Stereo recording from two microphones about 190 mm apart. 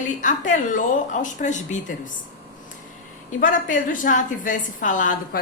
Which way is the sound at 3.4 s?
40° left (ahead or behind).